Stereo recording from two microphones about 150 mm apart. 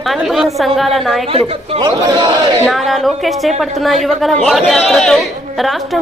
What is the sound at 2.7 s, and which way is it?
A woman's voice, centre (ahead or behind).